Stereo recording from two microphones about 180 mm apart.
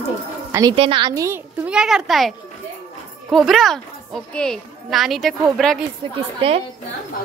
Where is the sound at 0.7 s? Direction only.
30° right (ahead or behind).